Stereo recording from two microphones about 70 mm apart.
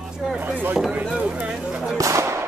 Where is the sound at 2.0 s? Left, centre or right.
Right.